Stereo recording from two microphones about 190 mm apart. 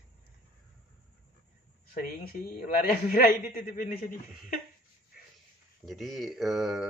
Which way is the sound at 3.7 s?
45° left (ahead or behind).